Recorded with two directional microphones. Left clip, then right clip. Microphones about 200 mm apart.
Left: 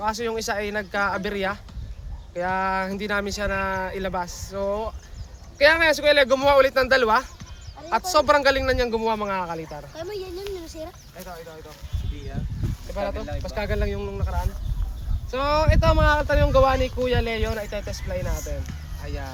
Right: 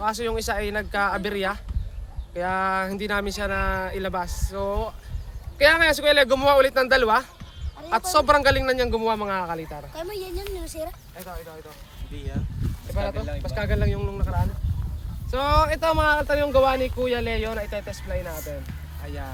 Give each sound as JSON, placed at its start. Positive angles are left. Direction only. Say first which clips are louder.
{"t": 0.0, "sound": "speech", "louder": "even", "side_deg": -5}
{"t": 9.9, "sound": "speech", "louder": "right 1 dB", "side_deg": -50}
{"t": 12.9, "sound": "speech", "louder": "left 1 dB", "side_deg": 5}